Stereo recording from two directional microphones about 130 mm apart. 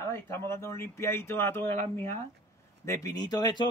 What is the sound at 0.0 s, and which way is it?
A man's voice, 20° left (ahead or behind).